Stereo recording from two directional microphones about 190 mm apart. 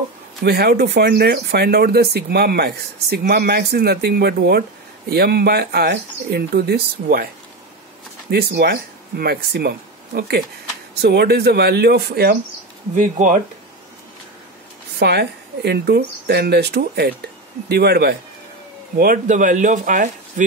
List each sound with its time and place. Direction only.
0.4 s speech: 55° right (ahead or behind)
8.3 s speech: 55° right (ahead or behind)
12.9 s speech: 45° right (ahead or behind)
15.0 s speech: 60° right (ahead or behind)
18.9 s speech: 45° right (ahead or behind)